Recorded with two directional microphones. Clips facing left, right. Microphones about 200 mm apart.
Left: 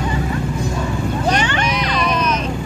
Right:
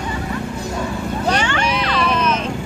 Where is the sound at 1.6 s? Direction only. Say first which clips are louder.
Even; 30° right (ahead or behind).